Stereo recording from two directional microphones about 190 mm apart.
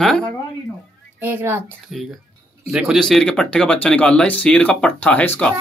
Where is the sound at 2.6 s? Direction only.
5° right (ahead or behind).